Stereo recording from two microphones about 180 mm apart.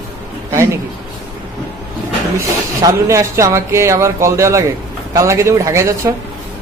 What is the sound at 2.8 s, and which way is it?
Speech, 20° right (ahead or behind).